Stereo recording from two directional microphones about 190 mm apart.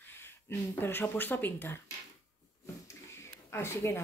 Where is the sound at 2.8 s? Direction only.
15° left (ahead or behind).